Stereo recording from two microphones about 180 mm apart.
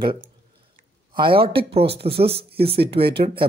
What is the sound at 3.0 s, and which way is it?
Speech, 60° right (ahead or behind).